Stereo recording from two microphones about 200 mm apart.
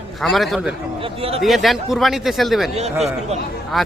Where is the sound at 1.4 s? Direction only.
Centre (ahead or behind).